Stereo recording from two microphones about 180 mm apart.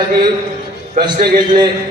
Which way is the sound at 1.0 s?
45° right (ahead or behind).